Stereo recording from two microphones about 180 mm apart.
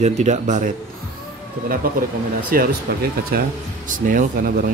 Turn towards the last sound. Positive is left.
turn(degrees=-50)  # may be behind; listen again after turning